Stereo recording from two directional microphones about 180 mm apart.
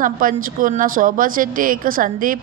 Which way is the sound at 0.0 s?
50° right (ahead or behind).